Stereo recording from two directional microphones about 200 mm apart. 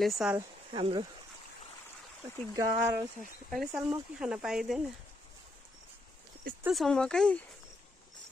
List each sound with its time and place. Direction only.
0.0 s speech: centre (ahead or behind)
0.7 s speech: 25° right (ahead or behind)
2.5 s speech: 15° right (ahead or behind)
3.4 s speech: centre (ahead or behind)
6.6 s speech: centre (ahead or behind)